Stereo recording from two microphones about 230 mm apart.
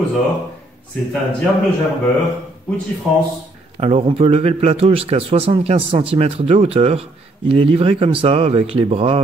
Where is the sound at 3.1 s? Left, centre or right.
Centre.